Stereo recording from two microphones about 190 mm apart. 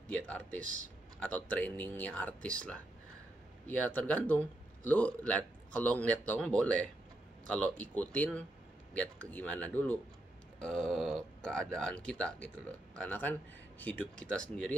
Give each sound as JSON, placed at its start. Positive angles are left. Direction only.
{"t": 0.5, "sound": "speech", "side_deg": -40}
{"t": 1.2, "sound": "speech", "side_deg": 10}
{"t": 7.8, "sound": "speech", "side_deg": 10}
{"t": 10.6, "sound": "a sound", "side_deg": 5}
{"t": 11.4, "sound": "speech", "side_deg": 5}